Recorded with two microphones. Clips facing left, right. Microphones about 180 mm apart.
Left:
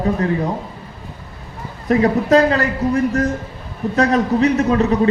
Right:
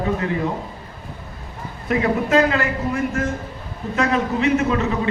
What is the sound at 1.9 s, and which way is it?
A man's voice, 35° left (ahead or behind).